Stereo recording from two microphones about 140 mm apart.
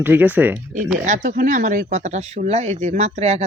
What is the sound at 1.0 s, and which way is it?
Speech, 65° right (ahead or behind).